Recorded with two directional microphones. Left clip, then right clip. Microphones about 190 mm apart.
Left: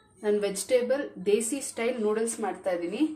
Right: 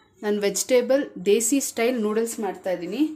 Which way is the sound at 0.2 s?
50° right (ahead or behind).